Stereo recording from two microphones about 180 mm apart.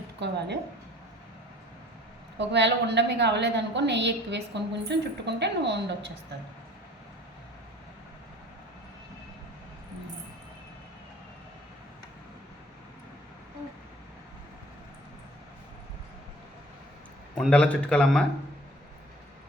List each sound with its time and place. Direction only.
0.2 s a woman's voice: 70° right (ahead or behind)
2.4 s a woman's voice: 75° right (ahead or behind)
17.3 s speech: 5° left (ahead or behind)